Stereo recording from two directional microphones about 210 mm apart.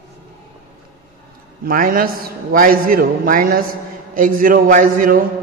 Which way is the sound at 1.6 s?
40° right (ahead or behind).